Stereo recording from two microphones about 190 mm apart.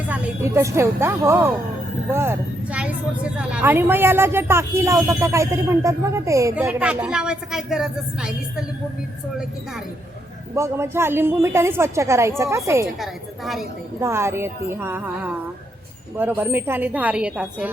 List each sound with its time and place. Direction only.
0.1 s speech: 10° right (ahead or behind)
10.5 s speech: 15° right (ahead or behind)
13.0 s a woman's voice: centre (ahead or behind)
14.0 s speech: 15° right (ahead or behind)